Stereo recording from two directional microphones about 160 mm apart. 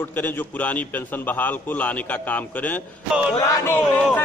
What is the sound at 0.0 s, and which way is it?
A man's voice, 10° left (ahead or behind).